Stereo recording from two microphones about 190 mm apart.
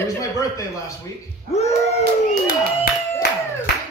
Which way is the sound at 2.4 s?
50° left (ahead or behind).